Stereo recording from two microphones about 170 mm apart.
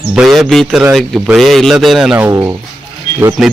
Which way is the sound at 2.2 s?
15° right (ahead or behind).